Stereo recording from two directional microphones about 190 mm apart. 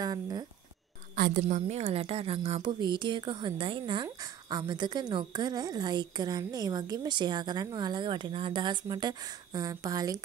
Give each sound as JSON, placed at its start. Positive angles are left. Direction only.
{"t": 0.0, "sound": "speech", "side_deg": -20}
{"t": 1.1, "sound": "a woman's voice", "side_deg": -45}
{"t": 1.4, "sound": "speech", "side_deg": -35}